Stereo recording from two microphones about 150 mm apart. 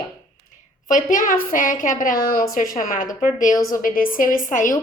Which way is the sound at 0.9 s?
60° left (ahead or behind).